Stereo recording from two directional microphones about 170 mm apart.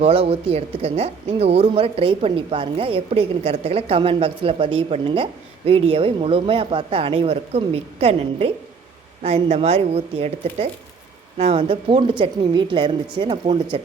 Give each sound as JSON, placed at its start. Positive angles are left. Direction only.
{"t": 0.0, "sound": "a woman's voice", "side_deg": -35}